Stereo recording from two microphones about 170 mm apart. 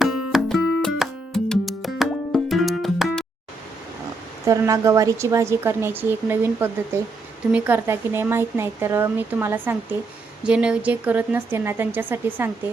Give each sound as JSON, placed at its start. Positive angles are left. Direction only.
{"t": 0.0, "sound": "music", "side_deg": 0}
{"t": 4.4, "sound": "a woman's voice", "side_deg": -20}